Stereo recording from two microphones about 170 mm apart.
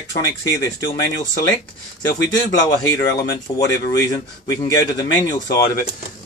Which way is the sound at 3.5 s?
45° left (ahead or behind).